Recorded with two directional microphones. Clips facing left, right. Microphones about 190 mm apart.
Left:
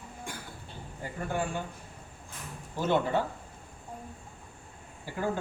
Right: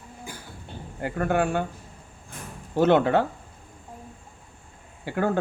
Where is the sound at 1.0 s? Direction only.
70° right (ahead or behind).